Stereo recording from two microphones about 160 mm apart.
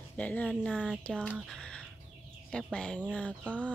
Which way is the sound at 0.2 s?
10° left (ahead or behind).